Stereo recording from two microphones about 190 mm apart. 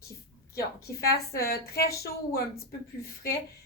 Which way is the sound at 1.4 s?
55° left (ahead or behind).